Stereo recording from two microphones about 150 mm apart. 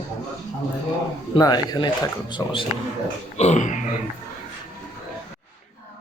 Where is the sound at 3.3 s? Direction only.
50° left (ahead or behind).